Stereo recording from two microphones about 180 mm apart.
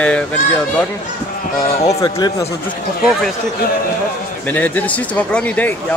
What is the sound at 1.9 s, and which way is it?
Speech, 20° left (ahead or behind).